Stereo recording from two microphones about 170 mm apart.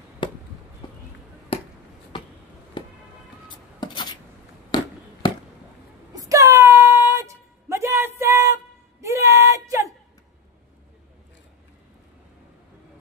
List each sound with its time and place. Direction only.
0.2 s a sound: 30° left (ahead or behind)
1.5 s basketball bounce: 35° left (ahead or behind)
2.8 s music: 25° left (ahead or behind)
3.4 s rub: 25° left (ahead or behind)
5.2 s chop: 25° left (ahead or behind)
6.1 s a sound: 20° right (ahead or behind)